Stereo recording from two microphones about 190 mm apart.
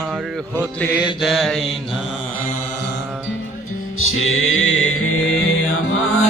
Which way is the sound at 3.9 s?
90° left.